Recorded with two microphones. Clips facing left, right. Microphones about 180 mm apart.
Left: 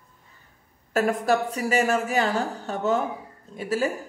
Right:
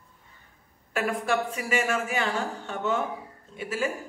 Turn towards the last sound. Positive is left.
turn(degrees=40)  # may be behind; listen again after turning